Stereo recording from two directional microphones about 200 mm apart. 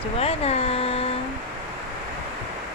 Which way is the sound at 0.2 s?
30° left (ahead or behind).